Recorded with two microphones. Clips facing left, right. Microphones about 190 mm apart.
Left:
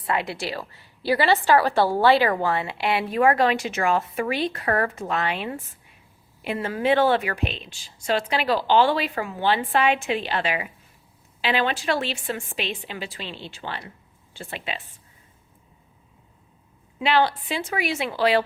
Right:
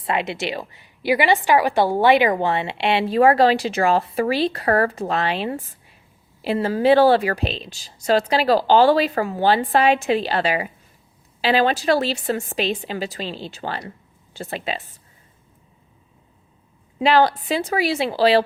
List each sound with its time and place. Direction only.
0.0 s a woman's voice: 20° right (ahead or behind); by 14.8 s 40° right (ahead or behind)
17.0 s speech: 40° right (ahead or behind)